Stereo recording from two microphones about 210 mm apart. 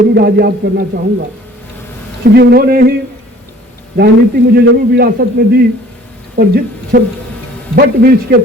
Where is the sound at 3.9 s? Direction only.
45° right (ahead or behind).